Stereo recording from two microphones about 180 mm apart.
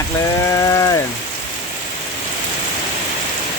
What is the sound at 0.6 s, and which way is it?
Rain on surface, 20° left (ahead or behind).